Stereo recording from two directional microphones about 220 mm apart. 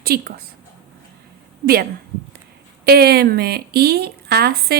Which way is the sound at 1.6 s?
45° right (ahead or behind).